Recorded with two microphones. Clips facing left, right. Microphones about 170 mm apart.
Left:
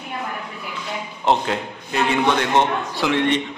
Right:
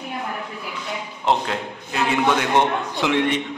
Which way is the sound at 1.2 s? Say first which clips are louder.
Left 2 dB; centre (ahead or behind).